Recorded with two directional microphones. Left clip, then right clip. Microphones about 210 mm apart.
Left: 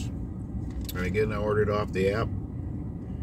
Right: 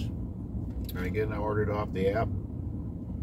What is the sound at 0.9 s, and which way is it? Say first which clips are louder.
Speech: left 4 dB; 10° left (ahead or behind).